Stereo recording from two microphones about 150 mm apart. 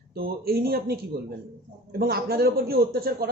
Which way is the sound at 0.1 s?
90° right.